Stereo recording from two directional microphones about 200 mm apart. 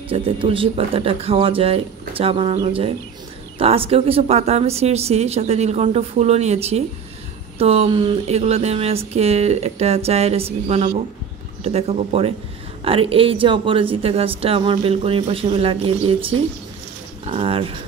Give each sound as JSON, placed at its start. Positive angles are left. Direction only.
{"t": 0.1, "sound": "speech", "side_deg": -25}
{"t": 17.2, "sound": "speech", "side_deg": -30}